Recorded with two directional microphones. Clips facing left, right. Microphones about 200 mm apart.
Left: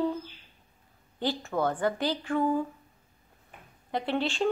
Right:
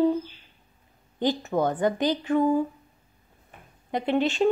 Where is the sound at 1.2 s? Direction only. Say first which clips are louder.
Right 5 dB; 15° right (ahead or behind).